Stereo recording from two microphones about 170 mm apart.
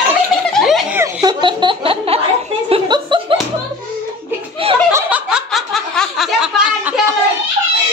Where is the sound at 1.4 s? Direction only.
30° right (ahead or behind).